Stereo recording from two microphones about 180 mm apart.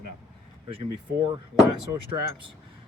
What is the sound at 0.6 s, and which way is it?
Speech, 30° right (ahead or behind).